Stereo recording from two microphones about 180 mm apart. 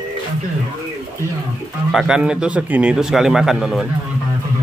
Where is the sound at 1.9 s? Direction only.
5° right (ahead or behind).